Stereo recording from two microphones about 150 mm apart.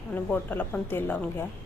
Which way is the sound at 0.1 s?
10° left (ahead or behind).